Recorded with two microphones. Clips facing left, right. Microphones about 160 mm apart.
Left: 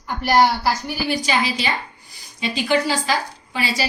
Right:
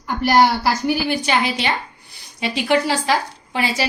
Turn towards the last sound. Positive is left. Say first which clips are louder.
# right 2 dB
turn(degrees=-60)  # may be behind; listen again after turning